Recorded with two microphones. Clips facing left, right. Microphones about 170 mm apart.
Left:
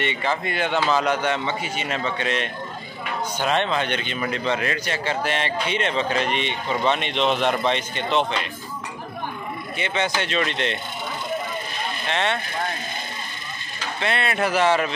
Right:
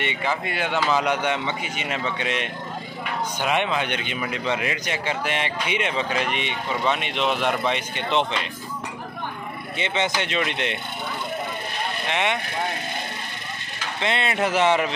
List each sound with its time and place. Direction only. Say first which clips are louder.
0.0 s a man's voice: left 2 dB; 10° right (ahead or behind)
9.8 s a man's voice: even; 20° right (ahead or behind)
12.1 s a man's voice: left 1 dB; 15° right (ahead or behind)
13.9 s speech: even; 20° right (ahead or behind)